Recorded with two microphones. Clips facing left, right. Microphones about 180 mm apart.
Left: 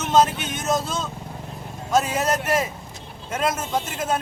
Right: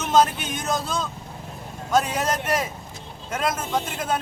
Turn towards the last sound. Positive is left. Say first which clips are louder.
# left 1 dB
turn(degrees=5)  # may be behind; listen again after turning